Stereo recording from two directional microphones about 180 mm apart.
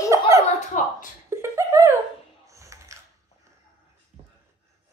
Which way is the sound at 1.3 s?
15° right (ahead or behind).